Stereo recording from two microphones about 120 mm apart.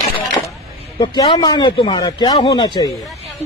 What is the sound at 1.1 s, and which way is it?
A man's voice, 35° left (ahead or behind).